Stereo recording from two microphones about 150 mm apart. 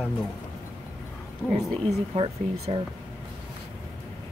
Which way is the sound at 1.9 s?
40° right (ahead or behind).